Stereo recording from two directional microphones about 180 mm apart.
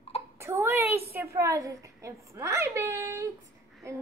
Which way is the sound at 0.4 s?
15° right (ahead or behind).